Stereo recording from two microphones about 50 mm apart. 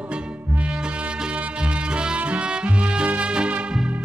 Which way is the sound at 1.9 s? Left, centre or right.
Right.